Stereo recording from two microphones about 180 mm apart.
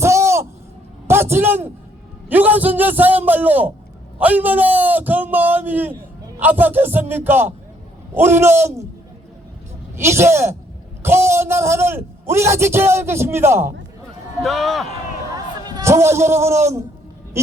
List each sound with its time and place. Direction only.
0.0 s a sound: 15° right (ahead or behind)
2.3 s a man's voice: 10° right (ahead or behind)
9.9 s a man's voice: 15° right (ahead or behind)
14.4 s speech: centre (ahead or behind)
15.6 s a man's voice: 20° right (ahead or behind)